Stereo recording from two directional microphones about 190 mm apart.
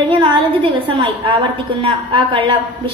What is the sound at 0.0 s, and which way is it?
A woman's voice, 25° right (ahead or behind).